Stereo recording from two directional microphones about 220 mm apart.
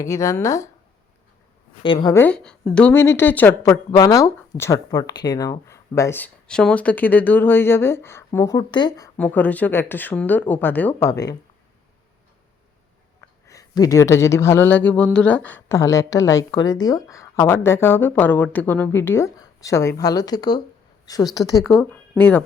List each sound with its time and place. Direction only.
0.0 s speech: 15° left (ahead or behind)
1.8 s speech: 20° left (ahead or behind)
2.2 s speech: 5° left (ahead or behind)
9.1 s speech: 5° left (ahead or behind)
13.5 s speech: 15° left (ahead or behind)
21.6 s speech: centre (ahead or behind)
22.2 s speech: 10° left (ahead or behind)